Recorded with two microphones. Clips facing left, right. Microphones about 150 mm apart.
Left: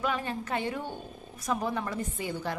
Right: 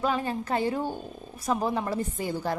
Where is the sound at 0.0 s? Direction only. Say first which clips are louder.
Right 4 dB; 35° right (ahead or behind).